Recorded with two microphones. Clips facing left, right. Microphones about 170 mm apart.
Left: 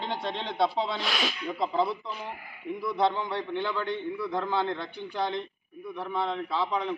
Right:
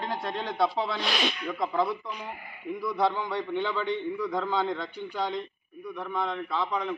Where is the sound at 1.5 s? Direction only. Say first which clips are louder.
Left 2 dB; 25° left (ahead or behind).